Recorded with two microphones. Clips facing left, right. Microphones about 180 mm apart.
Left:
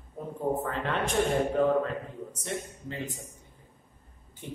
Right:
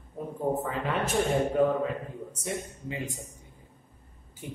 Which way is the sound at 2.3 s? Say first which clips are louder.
Right 1 dB; 10° right (ahead or behind).